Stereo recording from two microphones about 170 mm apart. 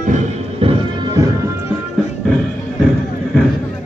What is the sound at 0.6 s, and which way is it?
Music, 35° right (ahead or behind).